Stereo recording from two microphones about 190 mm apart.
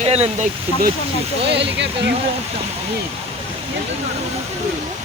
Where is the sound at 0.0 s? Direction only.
35° right (ahead or behind).